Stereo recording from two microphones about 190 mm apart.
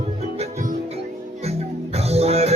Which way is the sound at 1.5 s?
35° right (ahead or behind).